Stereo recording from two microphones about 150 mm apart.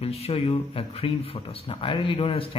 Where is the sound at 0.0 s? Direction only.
40° left (ahead or behind).